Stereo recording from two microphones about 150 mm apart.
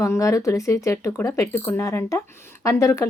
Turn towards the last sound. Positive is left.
turn(degrees=20)  # may be behind; listen again after turning